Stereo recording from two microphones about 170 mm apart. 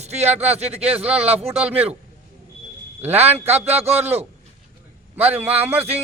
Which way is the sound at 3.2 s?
40° right (ahead or behind).